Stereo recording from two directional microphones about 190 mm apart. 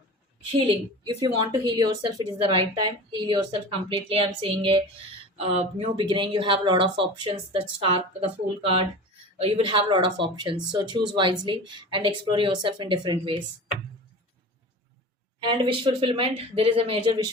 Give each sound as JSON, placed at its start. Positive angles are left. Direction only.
{"t": 0.6, "sound": "a woman's voice", "side_deg": -25}
{"t": 15.4, "sound": "a woman's voice", "side_deg": -25}